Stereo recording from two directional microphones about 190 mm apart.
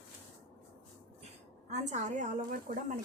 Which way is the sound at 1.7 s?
40° right (ahead or behind).